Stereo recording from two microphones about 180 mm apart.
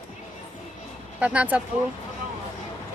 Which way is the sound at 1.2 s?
10° right (ahead or behind).